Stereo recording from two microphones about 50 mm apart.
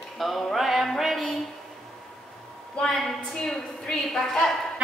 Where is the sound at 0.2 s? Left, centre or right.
Centre.